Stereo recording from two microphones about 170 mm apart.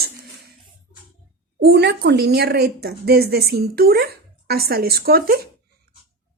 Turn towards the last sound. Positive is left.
turn(degrees=-60)  # may be behind; listen again after turning